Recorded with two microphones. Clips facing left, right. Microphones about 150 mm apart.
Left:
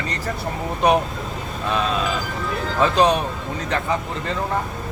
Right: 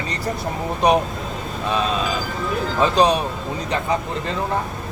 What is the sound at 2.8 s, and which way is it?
Speech, 15° right (ahead or behind).